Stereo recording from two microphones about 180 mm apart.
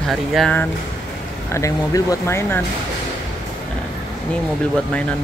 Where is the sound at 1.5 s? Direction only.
20° left (ahead or behind).